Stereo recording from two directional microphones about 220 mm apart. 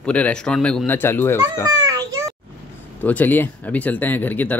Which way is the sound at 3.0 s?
10° left (ahead or behind).